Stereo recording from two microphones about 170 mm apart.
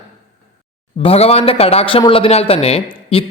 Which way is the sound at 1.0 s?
35° left (ahead or behind).